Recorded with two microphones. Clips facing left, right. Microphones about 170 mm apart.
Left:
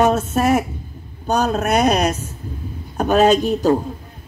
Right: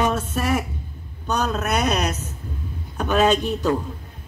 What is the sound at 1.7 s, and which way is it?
A man's voice, 35° left (ahead or behind).